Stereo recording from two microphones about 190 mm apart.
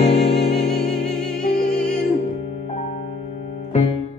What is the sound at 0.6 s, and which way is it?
Music, centre (ahead or behind).